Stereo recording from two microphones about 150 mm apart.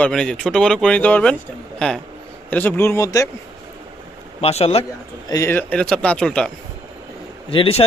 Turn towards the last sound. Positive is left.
turn(degrees=40)  # may be behind; listen again after turning